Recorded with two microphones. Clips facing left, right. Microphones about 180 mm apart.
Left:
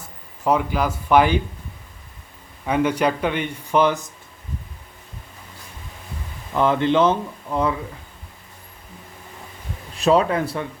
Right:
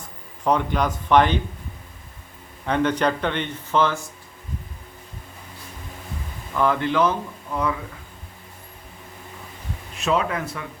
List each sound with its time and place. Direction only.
0.4 s speech: 5° left (ahead or behind)
2.6 s speech: 10° left (ahead or behind)
6.6 s speech: 20° left (ahead or behind)
10.0 s speech: 35° left (ahead or behind)